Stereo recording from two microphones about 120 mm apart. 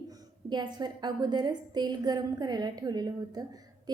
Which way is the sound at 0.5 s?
40° right (ahead or behind).